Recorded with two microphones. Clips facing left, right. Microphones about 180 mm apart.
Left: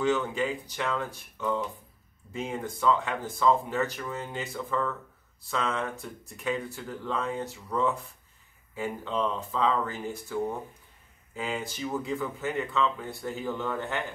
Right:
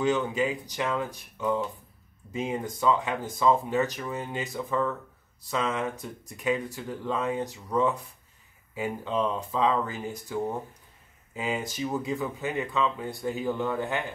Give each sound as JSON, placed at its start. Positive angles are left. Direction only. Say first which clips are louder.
{"t": 0.0, "sound": "speech", "louder": "right 1 dB", "side_deg": -15}